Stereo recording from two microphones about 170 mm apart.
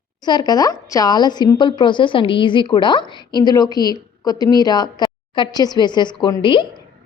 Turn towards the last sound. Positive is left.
turn(degrees=30)  # may be behind; listen again after turning